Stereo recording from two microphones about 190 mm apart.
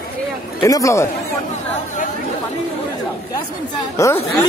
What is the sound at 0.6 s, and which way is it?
Speech, 15° left (ahead or behind).